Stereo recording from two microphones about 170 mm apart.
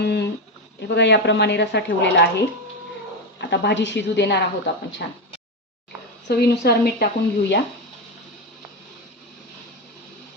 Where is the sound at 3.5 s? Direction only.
90° left.